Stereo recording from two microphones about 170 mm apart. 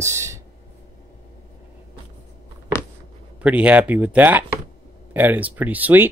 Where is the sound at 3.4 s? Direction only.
5° right (ahead or behind).